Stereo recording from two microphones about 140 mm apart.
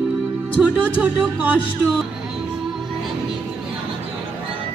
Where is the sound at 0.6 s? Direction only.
10° right (ahead or behind).